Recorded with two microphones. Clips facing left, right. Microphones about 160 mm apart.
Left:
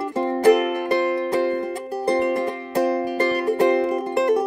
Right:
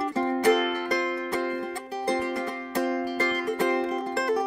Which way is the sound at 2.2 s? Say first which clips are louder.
Left 8 dB; 50° left (ahead or behind).